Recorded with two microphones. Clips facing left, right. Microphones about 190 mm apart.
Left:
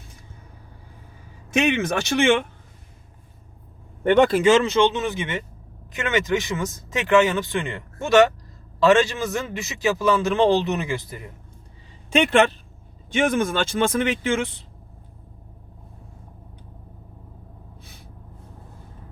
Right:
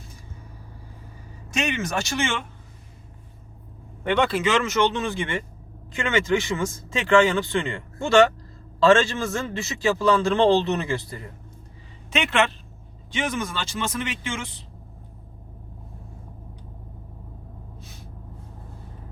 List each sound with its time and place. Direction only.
1.5 s speech: 60° left (ahead or behind)
4.0 s speech: 45° left (ahead or behind)
4.7 s a man's voice: 20° left (ahead or behind)
12.1 s a man's voice: 40° left (ahead or behind)
13.1 s speech: 50° left (ahead or behind)
17.7 s gasp: 55° left (ahead or behind)